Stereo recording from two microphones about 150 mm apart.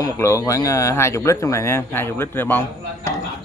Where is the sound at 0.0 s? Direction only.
20° left (ahead or behind).